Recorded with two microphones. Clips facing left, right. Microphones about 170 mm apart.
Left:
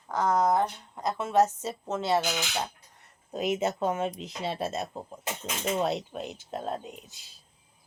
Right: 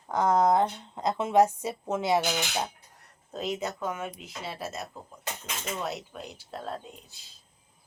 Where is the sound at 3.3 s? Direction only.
15° left (ahead or behind).